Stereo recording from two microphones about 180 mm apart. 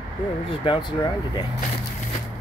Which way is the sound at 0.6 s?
25° left (ahead or behind).